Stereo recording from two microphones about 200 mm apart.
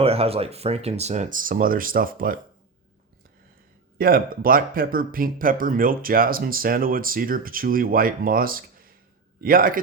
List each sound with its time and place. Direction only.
0.0 s speech: 30° right (ahead or behind)
3.9 s speech: 45° right (ahead or behind)